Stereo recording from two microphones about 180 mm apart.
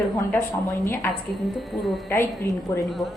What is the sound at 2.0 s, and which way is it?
Speech, 15° left (ahead or behind).